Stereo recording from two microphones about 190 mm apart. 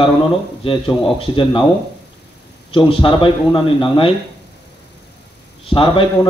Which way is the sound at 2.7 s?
25° left (ahead or behind).